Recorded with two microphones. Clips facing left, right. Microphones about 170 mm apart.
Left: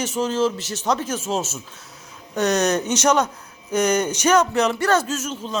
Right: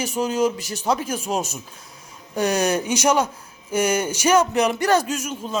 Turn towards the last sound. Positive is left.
turn(degrees=-10)  # may be behind; listen again after turning